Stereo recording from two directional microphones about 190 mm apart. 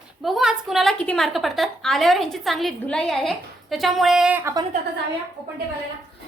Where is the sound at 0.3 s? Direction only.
Centre (ahead or behind).